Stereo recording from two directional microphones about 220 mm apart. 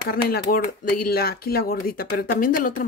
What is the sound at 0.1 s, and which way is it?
Speech, 45° left (ahead or behind).